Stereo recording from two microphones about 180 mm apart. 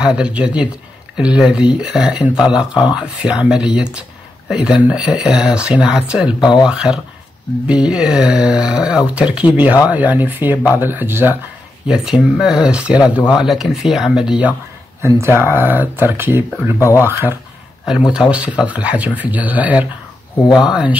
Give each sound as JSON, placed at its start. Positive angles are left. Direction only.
{"t": 0.0, "sound": "speech", "side_deg": -5}
{"t": 15.0, "sound": "speech", "side_deg": -15}
{"t": 16.7, "sound": "speech", "side_deg": 15}
{"t": 17.0, "sound": "speech", "side_deg": -10}